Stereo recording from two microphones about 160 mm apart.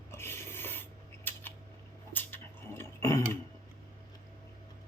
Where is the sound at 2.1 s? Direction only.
15° left (ahead or behind).